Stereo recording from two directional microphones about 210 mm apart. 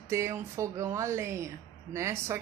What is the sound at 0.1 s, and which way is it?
Speech, 15° right (ahead or behind).